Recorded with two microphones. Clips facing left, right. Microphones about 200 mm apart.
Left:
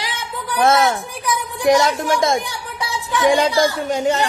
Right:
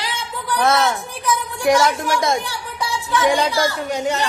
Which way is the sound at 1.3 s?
15° left (ahead or behind).